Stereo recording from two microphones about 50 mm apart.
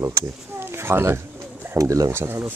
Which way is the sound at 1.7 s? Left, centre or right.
Right.